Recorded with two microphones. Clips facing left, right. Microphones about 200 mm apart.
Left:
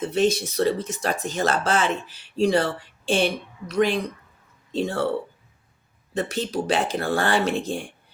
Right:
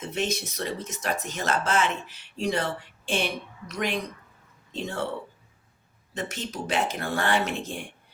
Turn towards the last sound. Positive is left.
turn(degrees=30)  # may be behind; listen again after turning